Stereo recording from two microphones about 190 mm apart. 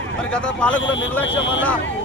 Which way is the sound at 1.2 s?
75° left (ahead or behind).